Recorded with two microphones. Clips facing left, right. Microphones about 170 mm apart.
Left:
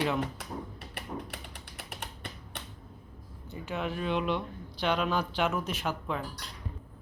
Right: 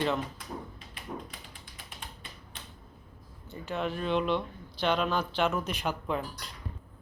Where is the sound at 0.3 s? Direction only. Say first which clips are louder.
Left 1 dB; 70° left (ahead or behind).